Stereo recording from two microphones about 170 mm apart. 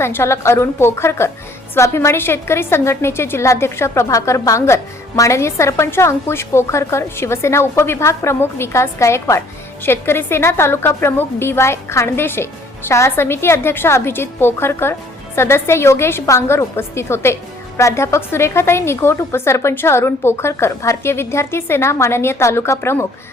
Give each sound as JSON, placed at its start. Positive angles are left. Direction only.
{"t": 0.0, "sound": "a woman's voice", "side_deg": 15}